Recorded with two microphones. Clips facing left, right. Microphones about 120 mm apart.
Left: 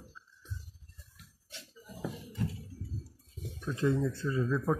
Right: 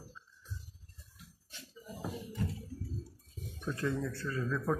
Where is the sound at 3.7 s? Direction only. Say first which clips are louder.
Left 6 dB; 20° left (ahead or behind).